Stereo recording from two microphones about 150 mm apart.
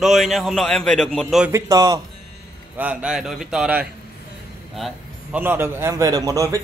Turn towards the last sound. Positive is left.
turn(degrees=-20)  # may be behind; listen again after turning